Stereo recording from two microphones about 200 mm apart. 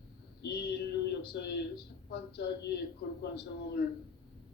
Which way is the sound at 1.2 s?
55° left (ahead or behind).